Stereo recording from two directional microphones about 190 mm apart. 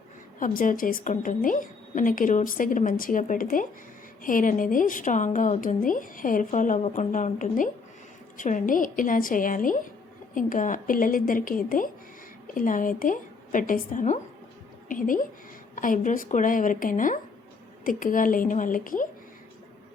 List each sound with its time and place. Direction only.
0.3 s a woman's voice: 45° left (ahead or behind)